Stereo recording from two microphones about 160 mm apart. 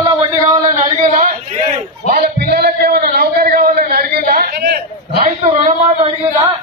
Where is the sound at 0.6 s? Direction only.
45° right (ahead or behind).